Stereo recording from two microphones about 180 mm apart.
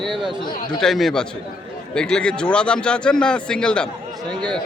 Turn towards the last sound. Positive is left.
turn(degrees=5)  # may be behind; listen again after turning